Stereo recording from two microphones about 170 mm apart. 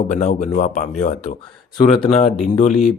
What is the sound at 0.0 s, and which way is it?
Speech, 45° left (ahead or behind).